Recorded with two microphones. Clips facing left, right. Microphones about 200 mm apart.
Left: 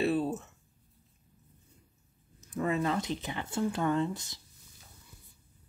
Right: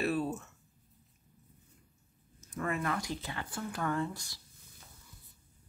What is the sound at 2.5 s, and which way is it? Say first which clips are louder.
Speech: left 5 dB; 20° left (ahead or behind).